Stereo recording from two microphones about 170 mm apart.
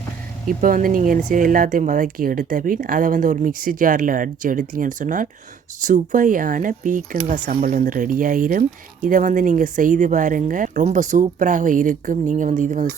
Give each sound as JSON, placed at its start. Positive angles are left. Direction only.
{"t": 0.4, "sound": "speech", "side_deg": -55}